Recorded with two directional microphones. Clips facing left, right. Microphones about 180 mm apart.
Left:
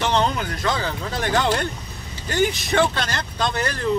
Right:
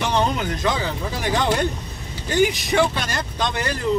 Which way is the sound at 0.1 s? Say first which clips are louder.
Even; 15° right (ahead or behind).